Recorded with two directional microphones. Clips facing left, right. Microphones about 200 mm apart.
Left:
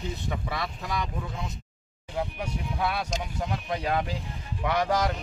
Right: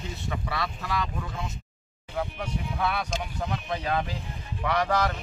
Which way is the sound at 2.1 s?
15° left (ahead or behind).